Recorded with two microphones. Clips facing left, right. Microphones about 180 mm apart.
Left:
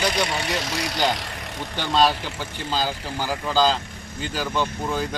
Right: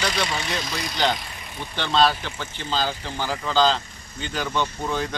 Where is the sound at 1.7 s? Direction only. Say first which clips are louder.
Even; 10° left (ahead or behind).